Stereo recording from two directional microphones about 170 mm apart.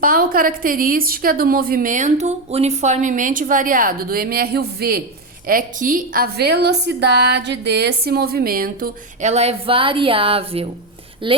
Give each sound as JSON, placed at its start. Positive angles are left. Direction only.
{"t": 0.0, "sound": "a woman's voice", "side_deg": -55}
{"t": 5.5, "sound": "a woman's voice", "side_deg": -55}
{"t": 9.3, "sound": "speech", "side_deg": -40}